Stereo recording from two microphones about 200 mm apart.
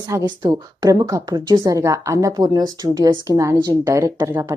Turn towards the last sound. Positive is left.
turn(degrees=-10)  # may be behind; listen again after turning